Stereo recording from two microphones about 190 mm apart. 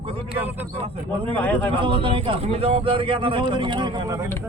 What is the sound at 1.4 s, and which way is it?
Speech, 10° left (ahead or behind).